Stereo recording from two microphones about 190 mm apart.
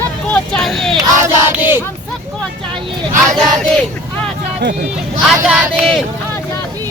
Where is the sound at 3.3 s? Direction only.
Centre (ahead or behind).